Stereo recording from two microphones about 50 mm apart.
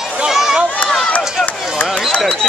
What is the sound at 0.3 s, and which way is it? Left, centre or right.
Run, centre.